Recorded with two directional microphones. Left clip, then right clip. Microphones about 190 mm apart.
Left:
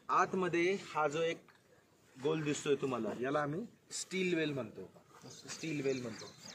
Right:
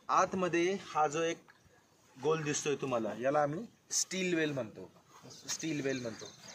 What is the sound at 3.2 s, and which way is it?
Speech, 50° right (ahead or behind).